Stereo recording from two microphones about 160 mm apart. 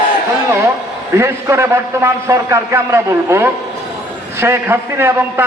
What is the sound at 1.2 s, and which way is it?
A man's voice, 15° right (ahead or behind).